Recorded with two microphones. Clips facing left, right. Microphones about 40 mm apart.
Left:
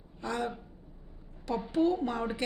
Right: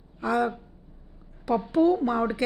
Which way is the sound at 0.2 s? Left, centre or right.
Centre.